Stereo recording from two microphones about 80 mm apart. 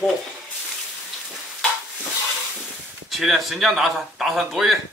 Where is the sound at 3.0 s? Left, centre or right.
Centre.